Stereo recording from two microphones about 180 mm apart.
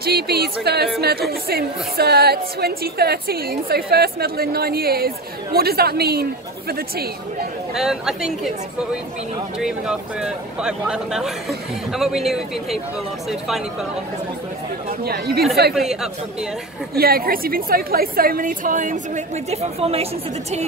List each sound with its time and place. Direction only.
0.0 s a woman's voice: 60° right (ahead or behind)
7.7 s speech: centre (ahead or behind)
14.9 s speech: 60° right (ahead or behind)
15.7 s speech: centre (ahead or behind)
16.9 s a woman's voice: 55° right (ahead or behind); by 20.1 s 35° right (ahead or behind)